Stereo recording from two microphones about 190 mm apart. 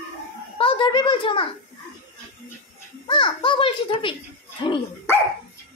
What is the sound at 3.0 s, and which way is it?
A child's voice, 25° left (ahead or behind).